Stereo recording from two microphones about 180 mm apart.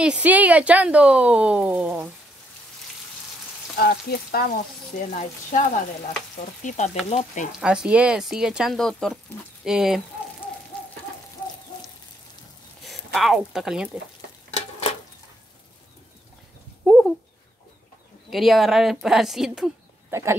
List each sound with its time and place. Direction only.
0.0 s speech: 5° right (ahead or behind)
3.7 s frying: 60° left (ahead or behind)
5.1 s speech: 45° left (ahead or behind)
6.6 s stir: 40° left (ahead or behind)
7.1 s speech: 40° left (ahead or behind)
7.6 s speech: 5° right (ahead or behind)
12.8 s speech: centre (ahead or behind)
14.5 s a sound: 35° left (ahead or behind)
16.8 s a sound: centre (ahead or behind)
18.3 s speech: centre (ahead or behind)
20.1 s speech: 15° right (ahead or behind)